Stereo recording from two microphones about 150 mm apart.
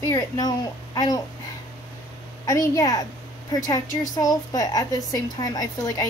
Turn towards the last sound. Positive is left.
turn(degrees=25)  # may be behind; listen again after turning